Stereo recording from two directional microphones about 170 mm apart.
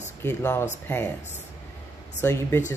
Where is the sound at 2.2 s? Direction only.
15° left (ahead or behind).